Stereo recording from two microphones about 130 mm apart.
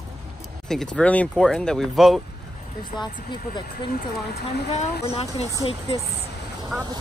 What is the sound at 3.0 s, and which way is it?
Speech, 35° left (ahead or behind).